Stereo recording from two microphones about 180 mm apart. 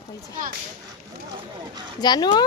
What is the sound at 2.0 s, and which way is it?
Speech, 25° left (ahead or behind).